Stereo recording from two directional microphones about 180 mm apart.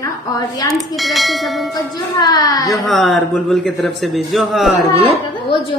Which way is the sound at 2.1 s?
20° left (ahead or behind).